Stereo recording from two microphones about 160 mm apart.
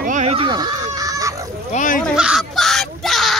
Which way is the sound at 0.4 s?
25° right (ahead or behind).